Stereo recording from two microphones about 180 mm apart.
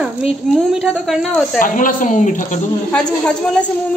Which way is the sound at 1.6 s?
50° left (ahead or behind).